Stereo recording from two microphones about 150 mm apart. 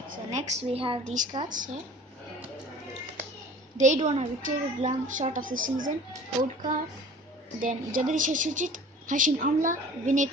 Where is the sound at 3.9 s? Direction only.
45° right (ahead or behind).